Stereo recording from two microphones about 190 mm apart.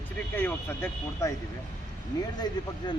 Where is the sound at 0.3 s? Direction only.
10° left (ahead or behind).